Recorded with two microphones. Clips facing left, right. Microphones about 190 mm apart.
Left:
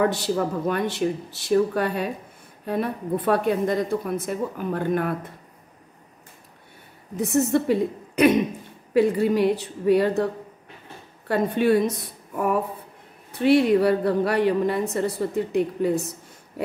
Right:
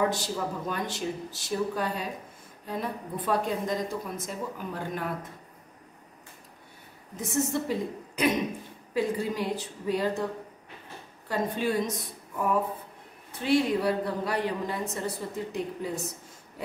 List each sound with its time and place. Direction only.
0.0 s a woman's voice: 65° left (ahead or behind)
7.2 s a woman's voice: 65° left (ahead or behind)
11.2 s a woman's voice: 65° left (ahead or behind)
13.4 s a woman's voice: 65° left (ahead or behind)